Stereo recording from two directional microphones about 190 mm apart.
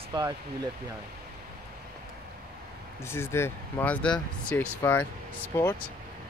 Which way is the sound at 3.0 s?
15° left (ahead or behind).